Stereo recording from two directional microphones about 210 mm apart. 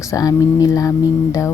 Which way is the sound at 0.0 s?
15° left (ahead or behind).